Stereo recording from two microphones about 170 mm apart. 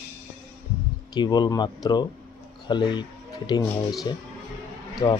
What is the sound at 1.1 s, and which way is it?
A man's voice, 25° left (ahead or behind).